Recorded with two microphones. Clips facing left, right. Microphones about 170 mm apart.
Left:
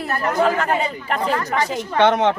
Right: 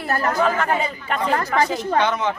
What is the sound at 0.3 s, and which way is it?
Speech, 35° left (ahead or behind).